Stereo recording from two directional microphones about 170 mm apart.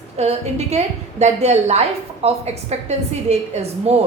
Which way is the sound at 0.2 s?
40° right (ahead or behind).